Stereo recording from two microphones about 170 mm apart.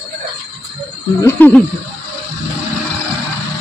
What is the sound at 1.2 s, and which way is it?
Speech, 10° left (ahead or behind).